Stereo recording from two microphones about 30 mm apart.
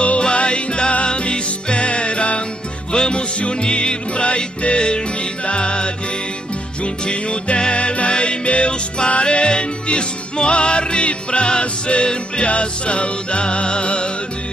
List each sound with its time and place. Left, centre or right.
0.2 s music: left